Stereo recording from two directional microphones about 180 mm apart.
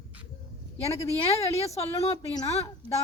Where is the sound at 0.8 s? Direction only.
35° left (ahead or behind).